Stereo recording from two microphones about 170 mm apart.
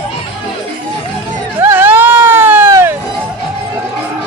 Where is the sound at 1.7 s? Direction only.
10° right (ahead or behind).